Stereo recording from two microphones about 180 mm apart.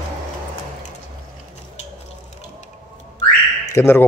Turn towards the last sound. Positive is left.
turn(degrees=15)  # may be behind; listen again after turning